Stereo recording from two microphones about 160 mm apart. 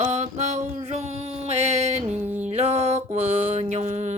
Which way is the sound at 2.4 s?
40° right (ahead or behind).